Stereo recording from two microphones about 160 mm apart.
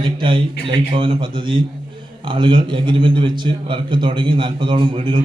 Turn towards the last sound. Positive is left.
turn(degrees=-30)  # may be behind; listen again after turning